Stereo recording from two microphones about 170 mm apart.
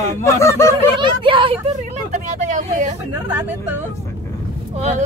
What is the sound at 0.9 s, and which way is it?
Speech, 30° right (ahead or behind).